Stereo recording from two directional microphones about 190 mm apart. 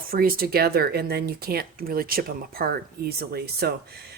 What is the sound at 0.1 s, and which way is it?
Speech, 50° right (ahead or behind).